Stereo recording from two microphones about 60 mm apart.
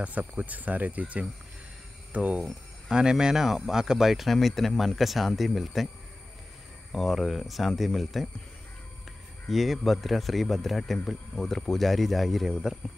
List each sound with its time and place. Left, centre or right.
0.0 s speech: right
2.4 s speech: centre
6.9 s speech: centre
9.5 s speech: centre